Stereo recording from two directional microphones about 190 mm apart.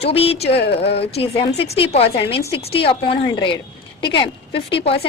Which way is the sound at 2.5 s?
30° left (ahead or behind).